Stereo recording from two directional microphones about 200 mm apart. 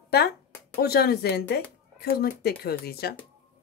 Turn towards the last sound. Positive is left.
turn(degrees=50)  # may be behind; listen again after turning